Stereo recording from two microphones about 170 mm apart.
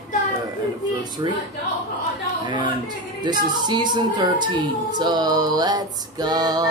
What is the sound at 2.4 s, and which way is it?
Music, 25° right (ahead or behind).